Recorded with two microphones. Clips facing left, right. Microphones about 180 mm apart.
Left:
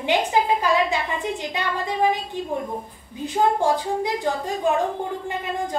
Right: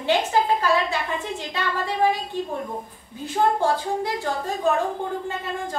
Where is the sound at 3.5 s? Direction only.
15° left (ahead or behind).